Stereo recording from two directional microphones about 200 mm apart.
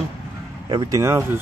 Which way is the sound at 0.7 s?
20° right (ahead or behind).